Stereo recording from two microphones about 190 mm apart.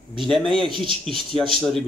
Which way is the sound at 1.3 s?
25° right (ahead or behind).